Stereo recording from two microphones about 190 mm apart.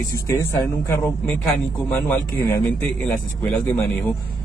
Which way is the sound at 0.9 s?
10° left (ahead or behind).